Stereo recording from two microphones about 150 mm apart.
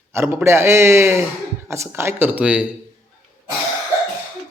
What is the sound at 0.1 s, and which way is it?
A man's voice, 15° right (ahead or behind).